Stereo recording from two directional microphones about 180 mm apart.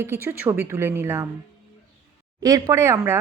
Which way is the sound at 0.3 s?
10° right (ahead or behind).